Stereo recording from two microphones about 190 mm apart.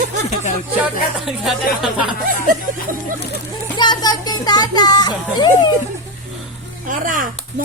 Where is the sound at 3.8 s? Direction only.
20° left (ahead or behind).